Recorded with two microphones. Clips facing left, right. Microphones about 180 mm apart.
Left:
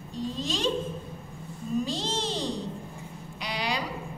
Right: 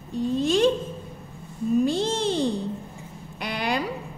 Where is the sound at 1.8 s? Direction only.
55° right (ahead or behind).